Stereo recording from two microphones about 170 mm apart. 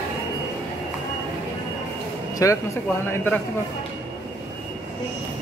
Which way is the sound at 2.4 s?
20° left (ahead or behind).